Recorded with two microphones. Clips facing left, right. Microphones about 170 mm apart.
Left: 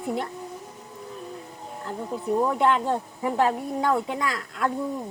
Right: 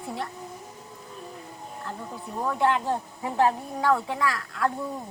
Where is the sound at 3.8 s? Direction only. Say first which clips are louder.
Right 1 dB; 20° left (ahead or behind).